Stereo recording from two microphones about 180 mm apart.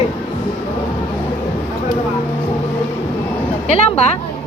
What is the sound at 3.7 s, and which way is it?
Speech, 35° left (ahead or behind).